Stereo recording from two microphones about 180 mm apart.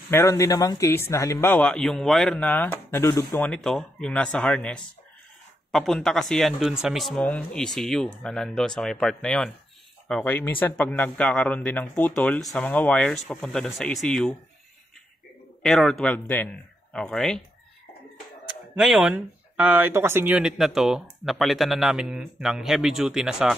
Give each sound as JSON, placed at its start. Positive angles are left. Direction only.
{"t": 0.1, "sound": "speech", "side_deg": 15}
{"t": 3.3, "sound": "speech", "side_deg": 5}
{"t": 15.6, "sound": "speech", "side_deg": 5}
{"t": 18.8, "sound": "speech", "side_deg": 0}